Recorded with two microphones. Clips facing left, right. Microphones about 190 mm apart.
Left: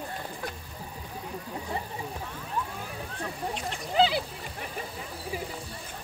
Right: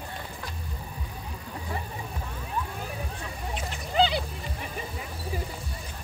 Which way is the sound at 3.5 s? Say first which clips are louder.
Right 1 dB; centre (ahead or behind).